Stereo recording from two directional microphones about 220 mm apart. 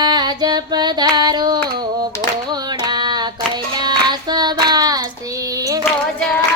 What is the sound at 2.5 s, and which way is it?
Child singing, 20° right (ahead or behind).